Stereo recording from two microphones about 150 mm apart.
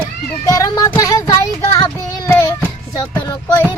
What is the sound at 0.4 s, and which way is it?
Speech, 20° left (ahead or behind).